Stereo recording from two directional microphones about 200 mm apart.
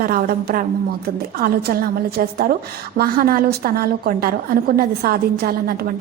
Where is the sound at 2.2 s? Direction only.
45° right (ahead or behind).